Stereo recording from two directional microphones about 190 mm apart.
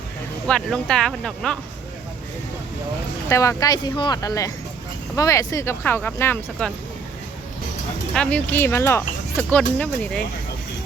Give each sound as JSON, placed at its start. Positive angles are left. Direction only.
{"t": 0.4, "sound": "speech", "side_deg": 5}
{"t": 3.2, "sound": "speech", "side_deg": 15}
{"t": 8.1, "sound": "speech", "side_deg": 5}